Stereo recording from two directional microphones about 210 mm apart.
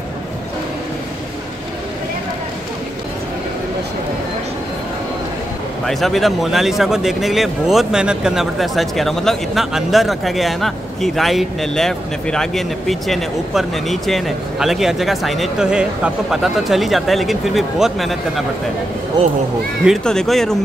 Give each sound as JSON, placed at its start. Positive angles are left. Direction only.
{"t": 5.9, "sound": "speech", "side_deg": 0}
{"t": 19.2, "sound": "speech", "side_deg": -20}
{"t": 19.8, "sound": "speech", "side_deg": 0}